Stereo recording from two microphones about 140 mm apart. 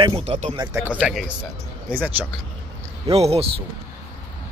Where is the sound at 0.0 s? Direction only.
40° right (ahead or behind).